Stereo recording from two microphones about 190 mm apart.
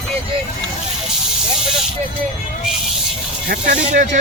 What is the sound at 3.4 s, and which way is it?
Speech, 50° right (ahead or behind).